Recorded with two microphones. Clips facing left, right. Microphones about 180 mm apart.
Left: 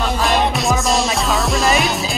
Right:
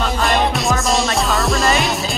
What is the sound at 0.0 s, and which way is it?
Music, centre (ahead or behind).